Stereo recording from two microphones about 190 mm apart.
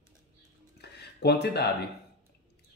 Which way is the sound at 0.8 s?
60° left (ahead or behind).